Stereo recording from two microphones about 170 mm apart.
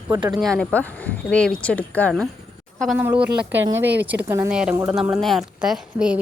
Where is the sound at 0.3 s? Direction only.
5° left (ahead or behind).